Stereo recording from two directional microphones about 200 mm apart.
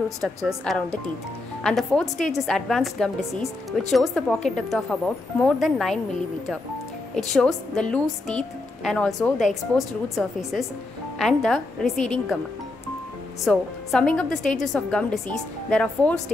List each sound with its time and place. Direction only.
0.5 s speech: centre (ahead or behind)
7.2 s speech: centre (ahead or behind)
13.5 s speech: 5° left (ahead or behind)